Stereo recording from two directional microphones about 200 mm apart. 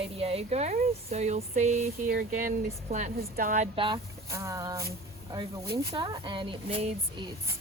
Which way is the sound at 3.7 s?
25° right (ahead or behind).